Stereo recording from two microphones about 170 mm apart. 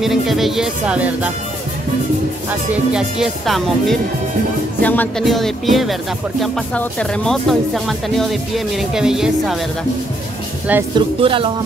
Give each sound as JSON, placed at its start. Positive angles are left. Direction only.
{"t": 0.0, "sound": "speech", "side_deg": 0}
{"t": 2.7, "sound": "speech", "side_deg": -5}
{"t": 4.8, "sound": "music", "side_deg": 10}
{"t": 5.2, "sound": "speech", "side_deg": 0}
{"t": 11.0, "sound": "music", "side_deg": -30}